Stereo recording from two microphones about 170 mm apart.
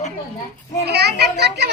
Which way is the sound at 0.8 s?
70° right (ahead or behind).